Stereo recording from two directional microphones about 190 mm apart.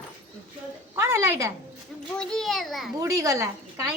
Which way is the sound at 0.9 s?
15° right (ahead or behind).